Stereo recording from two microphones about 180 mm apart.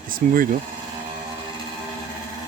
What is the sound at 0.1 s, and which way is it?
Speech, 50° right (ahead or behind).